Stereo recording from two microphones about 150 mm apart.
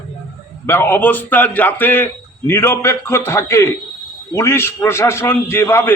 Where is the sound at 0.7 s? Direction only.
15° left (ahead or behind).